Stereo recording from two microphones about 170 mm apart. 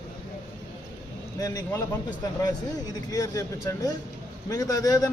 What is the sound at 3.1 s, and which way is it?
Speech, 20° left (ahead or behind).